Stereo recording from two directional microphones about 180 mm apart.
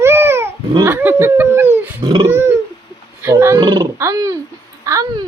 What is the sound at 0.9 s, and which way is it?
Snicker, 10° right (ahead or behind).